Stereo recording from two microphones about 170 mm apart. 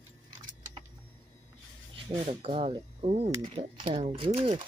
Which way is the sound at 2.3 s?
35° right (ahead or behind).